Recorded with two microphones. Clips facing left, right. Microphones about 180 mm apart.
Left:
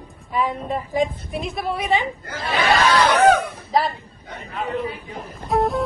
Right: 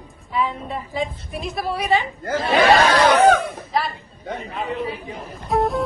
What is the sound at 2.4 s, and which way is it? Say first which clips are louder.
Speech: right 3 dB; 40° right (ahead or behind).